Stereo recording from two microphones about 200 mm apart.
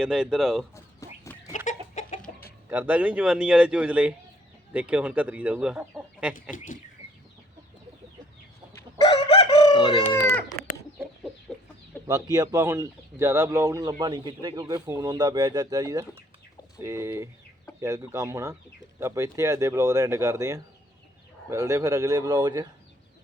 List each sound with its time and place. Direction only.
0.0 s speech: 5° right (ahead or behind)
0.9 s chicken: 15° left (ahead or behind)
2.6 s speech: 10° right (ahead or behind)
9.0 s chicken: 25° left (ahead or behind)
12.0 s speech: 15° right (ahead or behind)